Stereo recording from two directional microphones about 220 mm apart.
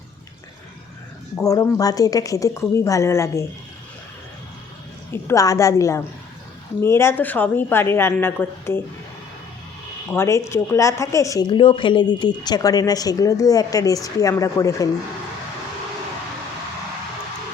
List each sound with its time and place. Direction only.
1.4 s speech: 15° left (ahead or behind)
5.1 s speech: 15° left (ahead or behind)
10.1 s speech: 10° left (ahead or behind)